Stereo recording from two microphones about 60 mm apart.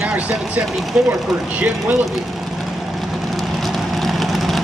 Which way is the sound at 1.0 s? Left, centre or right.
Centre.